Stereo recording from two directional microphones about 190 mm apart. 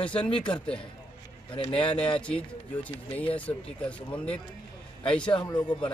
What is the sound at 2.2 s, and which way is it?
A man's voice, 5° left (ahead or behind).